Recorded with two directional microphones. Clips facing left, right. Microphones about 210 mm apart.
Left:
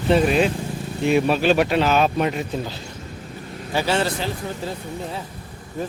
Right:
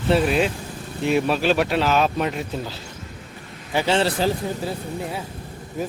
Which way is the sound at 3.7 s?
25° right (ahead or behind).